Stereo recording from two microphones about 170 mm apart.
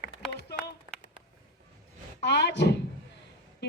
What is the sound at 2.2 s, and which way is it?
Speech, 90° left.